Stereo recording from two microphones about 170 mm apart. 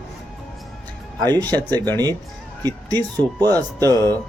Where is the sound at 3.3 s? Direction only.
20° right (ahead or behind).